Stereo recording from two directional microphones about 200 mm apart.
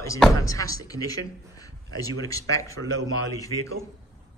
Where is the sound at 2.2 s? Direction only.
15° left (ahead or behind).